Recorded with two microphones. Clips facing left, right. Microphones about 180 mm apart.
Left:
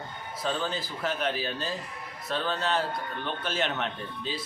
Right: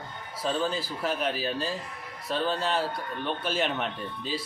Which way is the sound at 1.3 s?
35° right (ahead or behind).